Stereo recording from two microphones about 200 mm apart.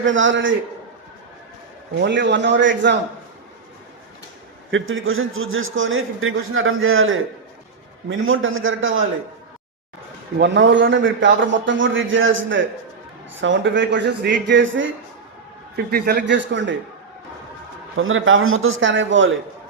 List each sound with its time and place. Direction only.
0.0 s a man's voice: 70° right (ahead or behind)
2.0 s speech: 60° right (ahead or behind)
4.7 s a man's voice: 75° right (ahead or behind)
10.3 s a man's voice: 60° right (ahead or behind)
15.7 s speech: 50° right (ahead or behind); by 16.7 s 65° right (ahead or behind)
17.9 s a man's voice: 85° right